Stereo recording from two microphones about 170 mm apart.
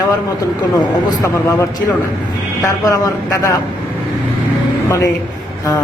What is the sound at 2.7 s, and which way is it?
Speech, 20° left (ahead or behind).